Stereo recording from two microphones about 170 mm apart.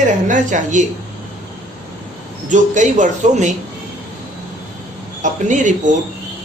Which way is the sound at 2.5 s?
45° right (ahead or behind).